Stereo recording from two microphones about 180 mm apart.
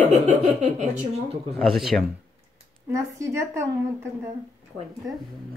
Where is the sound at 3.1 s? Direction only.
15° right (ahead or behind).